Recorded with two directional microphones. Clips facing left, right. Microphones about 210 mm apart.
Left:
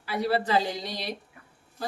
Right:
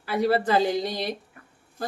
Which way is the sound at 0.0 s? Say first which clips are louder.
Right 4 dB; 50° right (ahead or behind).